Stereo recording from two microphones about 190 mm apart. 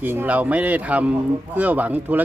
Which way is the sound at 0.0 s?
10° right (ahead or behind).